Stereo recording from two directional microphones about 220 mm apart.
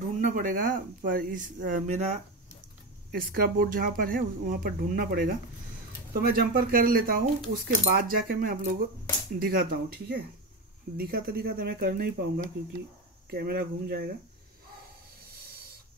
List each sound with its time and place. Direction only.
0.2 s speech: 40° right (ahead or behind)
13.3 s speech: 45° right (ahead or behind)